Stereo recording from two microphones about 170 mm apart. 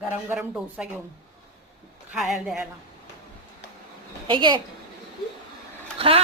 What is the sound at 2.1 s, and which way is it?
Speech, centre (ahead or behind).